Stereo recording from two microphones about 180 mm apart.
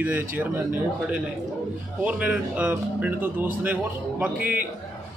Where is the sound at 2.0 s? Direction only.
10° right (ahead or behind).